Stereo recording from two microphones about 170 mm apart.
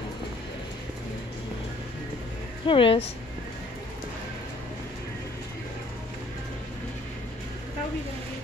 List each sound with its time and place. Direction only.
2.6 s speech: 30° left (ahead or behind)